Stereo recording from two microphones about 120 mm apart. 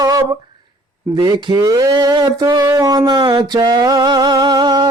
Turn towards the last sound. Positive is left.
turn(degrees=-35)  # may be behind; listen again after turning